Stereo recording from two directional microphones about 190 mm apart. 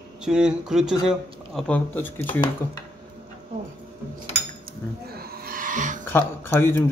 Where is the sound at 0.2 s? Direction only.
5° right (ahead or behind).